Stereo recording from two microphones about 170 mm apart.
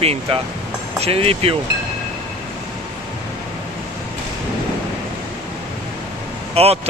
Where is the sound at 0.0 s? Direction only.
35° right (ahead or behind).